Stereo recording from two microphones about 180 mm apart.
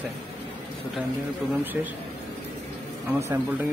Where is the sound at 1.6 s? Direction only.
10° right (ahead or behind).